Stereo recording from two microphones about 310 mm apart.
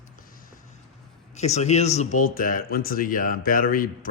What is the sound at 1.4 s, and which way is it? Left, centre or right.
Speech, left.